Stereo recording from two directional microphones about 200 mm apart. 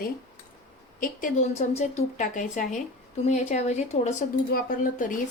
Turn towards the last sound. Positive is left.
turn(degrees=40)  # may be behind; listen again after turning